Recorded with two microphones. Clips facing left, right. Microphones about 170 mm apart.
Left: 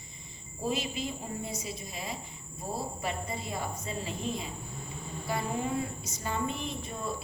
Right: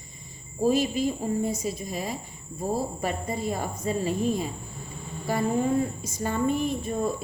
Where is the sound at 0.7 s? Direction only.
45° right (ahead or behind).